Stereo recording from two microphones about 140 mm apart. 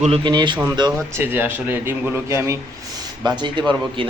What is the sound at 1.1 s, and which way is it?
Speech, 15° right (ahead or behind).